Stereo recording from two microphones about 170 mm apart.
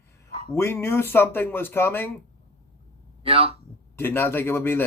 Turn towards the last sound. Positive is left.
turn(degrees=15)  # may be behind; listen again after turning